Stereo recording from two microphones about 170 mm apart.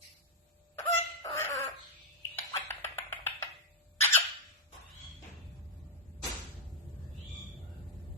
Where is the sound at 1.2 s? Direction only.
15° left (ahead or behind).